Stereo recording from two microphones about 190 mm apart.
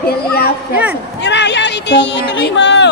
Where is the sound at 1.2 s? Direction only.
65° left (ahead or behind).